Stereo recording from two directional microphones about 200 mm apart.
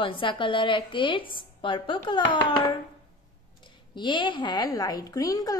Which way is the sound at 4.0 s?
25° left (ahead or behind).